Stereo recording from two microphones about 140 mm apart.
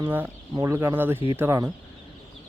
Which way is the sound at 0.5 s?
20° right (ahead or behind).